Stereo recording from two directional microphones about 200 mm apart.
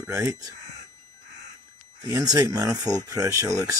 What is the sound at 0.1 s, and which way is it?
Speech, 15° right (ahead or behind).